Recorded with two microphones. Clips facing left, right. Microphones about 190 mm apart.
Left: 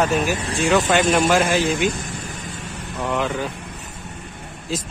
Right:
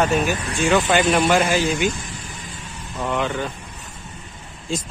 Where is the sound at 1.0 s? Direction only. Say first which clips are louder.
Even; 45° left (ahead or behind).